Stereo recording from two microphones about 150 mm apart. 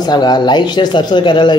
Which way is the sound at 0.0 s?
30° left (ahead or behind).